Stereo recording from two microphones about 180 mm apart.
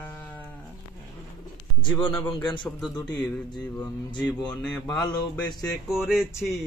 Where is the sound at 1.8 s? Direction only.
25° left (ahead or behind).